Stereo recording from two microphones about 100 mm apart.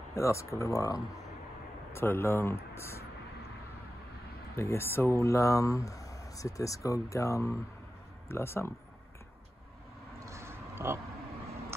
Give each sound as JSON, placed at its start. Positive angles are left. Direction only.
{"t": 0.1, "sound": "speech", "side_deg": 30}
{"t": 1.9, "sound": "speech", "side_deg": 25}
{"t": 4.6, "sound": "speech", "side_deg": 25}
{"t": 10.2, "sound": "a sound", "side_deg": -30}